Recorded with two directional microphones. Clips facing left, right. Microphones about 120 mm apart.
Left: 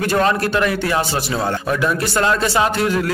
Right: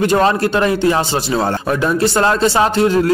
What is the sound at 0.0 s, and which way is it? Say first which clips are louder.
A man's voice: right 4 dB; 25° right (ahead or behind).